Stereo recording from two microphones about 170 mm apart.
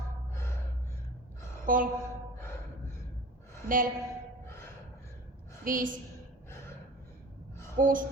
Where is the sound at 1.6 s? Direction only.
55° right (ahead or behind).